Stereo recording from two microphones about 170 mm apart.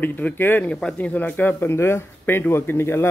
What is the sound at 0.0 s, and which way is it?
Speech, 10° left (ahead or behind).